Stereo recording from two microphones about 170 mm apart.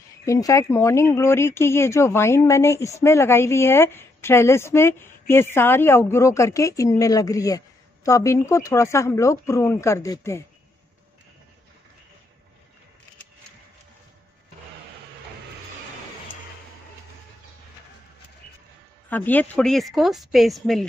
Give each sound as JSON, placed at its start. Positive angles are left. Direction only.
{"t": 0.2, "sound": "a woman's voice", "side_deg": 20}
{"t": 19.0, "sound": "speech", "side_deg": 10}